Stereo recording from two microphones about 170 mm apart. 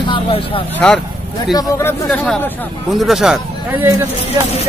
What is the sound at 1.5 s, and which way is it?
Speech, 20° left (ahead or behind).